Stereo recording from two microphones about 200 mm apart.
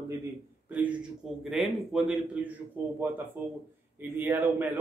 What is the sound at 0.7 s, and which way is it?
A man's voice, 5° right (ahead or behind).